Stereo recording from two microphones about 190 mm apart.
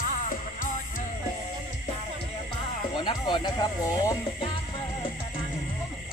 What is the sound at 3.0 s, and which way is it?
Speech, 25° left (ahead or behind).